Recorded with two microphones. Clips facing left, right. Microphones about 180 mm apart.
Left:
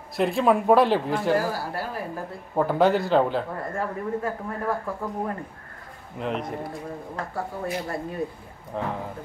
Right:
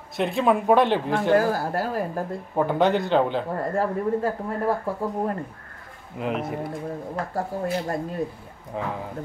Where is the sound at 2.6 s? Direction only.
Centre (ahead or behind).